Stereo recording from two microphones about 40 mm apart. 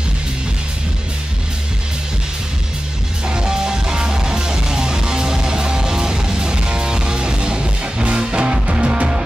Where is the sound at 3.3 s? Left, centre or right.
Centre.